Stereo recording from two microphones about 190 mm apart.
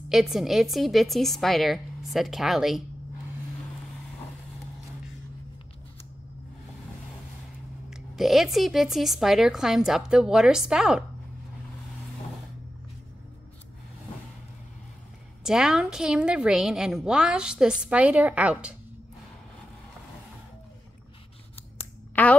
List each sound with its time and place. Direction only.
0.1 s a woman's voice: centre (ahead or behind)
7.9 s a woman's voice: centre (ahead or behind)
15.4 s a woman's voice: 5° right (ahead or behind)
22.1 s speech: 10° left (ahead or behind)